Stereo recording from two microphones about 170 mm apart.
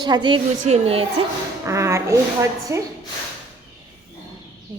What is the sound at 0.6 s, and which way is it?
Speech, 40° right (ahead or behind).